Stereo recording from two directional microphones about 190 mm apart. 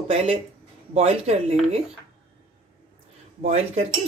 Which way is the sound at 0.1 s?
30° right (ahead or behind).